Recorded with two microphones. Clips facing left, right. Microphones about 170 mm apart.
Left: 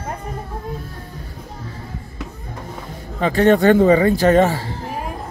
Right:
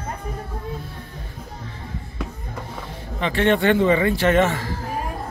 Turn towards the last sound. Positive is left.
turn(degrees=30)  # may be behind; listen again after turning